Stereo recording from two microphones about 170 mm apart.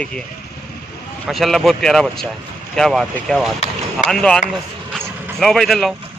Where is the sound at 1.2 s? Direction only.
Centre (ahead or behind).